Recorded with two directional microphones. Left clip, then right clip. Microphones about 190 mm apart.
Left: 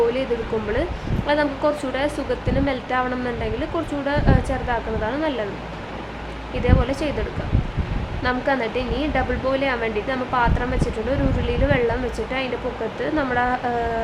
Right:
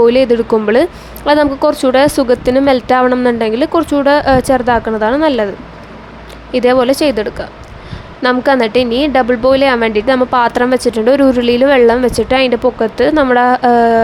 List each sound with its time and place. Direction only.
0.3 s a woman's voice: 50° right (ahead or behind)
6.5 s a woman's voice: 55° right (ahead or behind)